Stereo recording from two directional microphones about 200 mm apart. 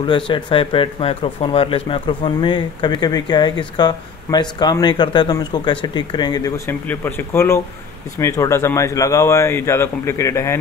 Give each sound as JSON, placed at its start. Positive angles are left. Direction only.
{"t": 0.0, "sound": "speech", "side_deg": 25}